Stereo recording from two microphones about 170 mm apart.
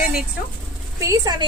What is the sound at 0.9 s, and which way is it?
Speech, 20° right (ahead or behind).